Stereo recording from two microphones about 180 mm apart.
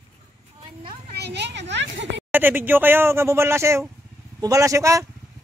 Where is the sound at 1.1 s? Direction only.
70° right (ahead or behind).